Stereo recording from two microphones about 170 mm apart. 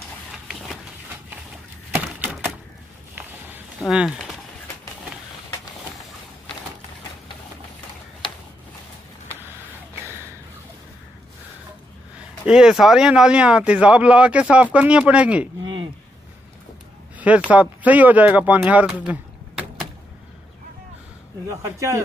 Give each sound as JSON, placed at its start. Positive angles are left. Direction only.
{"t": 0.5, "sound": "a sound", "side_deg": 0}
{"t": 3.8, "sound": "speech", "side_deg": -5}
{"t": 12.4, "sound": "speech", "side_deg": -5}
{"t": 17.2, "sound": "speech", "side_deg": -10}
{"t": 21.5, "sound": "speech", "side_deg": -20}